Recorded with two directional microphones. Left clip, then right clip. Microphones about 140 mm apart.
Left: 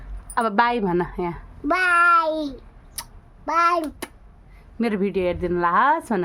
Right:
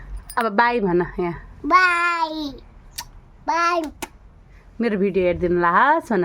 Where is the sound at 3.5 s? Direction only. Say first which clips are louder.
Even; 10° left (ahead or behind).